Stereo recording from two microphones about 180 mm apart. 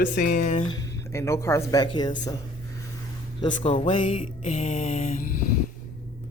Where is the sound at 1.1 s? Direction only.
15° left (ahead or behind).